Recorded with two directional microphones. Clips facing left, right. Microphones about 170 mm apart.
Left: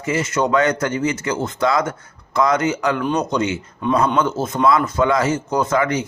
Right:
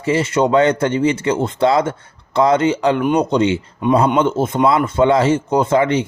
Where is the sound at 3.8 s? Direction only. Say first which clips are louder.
Right 4 dB; 15° right (ahead or behind).